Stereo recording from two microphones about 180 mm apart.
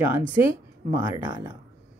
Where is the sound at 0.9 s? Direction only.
15° right (ahead or behind).